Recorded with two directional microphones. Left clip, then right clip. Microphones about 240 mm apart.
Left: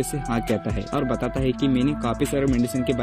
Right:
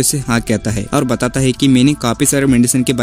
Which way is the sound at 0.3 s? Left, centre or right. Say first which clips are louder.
Right 6 dB; centre.